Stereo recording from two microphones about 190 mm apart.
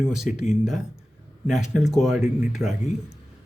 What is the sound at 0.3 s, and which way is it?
Speech, 35° left (ahead or behind).